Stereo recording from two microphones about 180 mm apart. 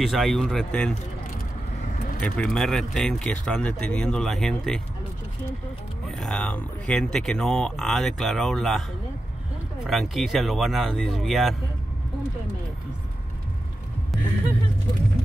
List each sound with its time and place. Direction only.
0.0 s speech: centre (ahead or behind)
2.1 s speech: 5° left (ahead or behind)
6.1 s speech: 5° left (ahead or behind)
9.8 s speech: centre (ahead or behind)
14.1 s music: centre (ahead or behind)